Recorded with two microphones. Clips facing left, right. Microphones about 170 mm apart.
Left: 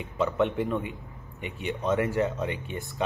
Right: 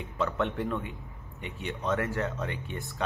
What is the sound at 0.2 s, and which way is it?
A man's voice, 15° left (ahead or behind).